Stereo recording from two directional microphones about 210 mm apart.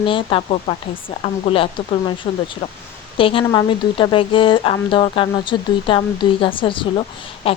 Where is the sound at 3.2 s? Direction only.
25° left (ahead or behind).